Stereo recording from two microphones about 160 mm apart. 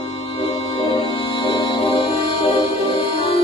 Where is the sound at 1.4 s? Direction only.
25° left (ahead or behind).